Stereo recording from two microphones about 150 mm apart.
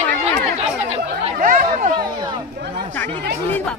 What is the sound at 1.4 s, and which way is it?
Speech, 65° right (ahead or behind).